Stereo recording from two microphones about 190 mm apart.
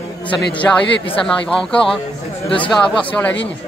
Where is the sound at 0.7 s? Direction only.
10° left (ahead or behind).